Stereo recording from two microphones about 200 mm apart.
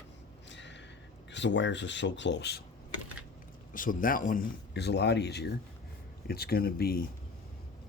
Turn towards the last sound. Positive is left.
turn(degrees=50)  # may be behind; listen again after turning